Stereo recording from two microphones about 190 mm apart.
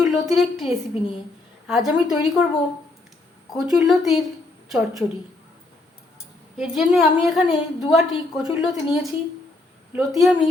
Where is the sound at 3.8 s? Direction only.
Centre (ahead or behind).